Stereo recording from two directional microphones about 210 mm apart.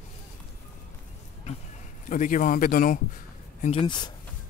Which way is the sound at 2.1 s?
40° left (ahead or behind).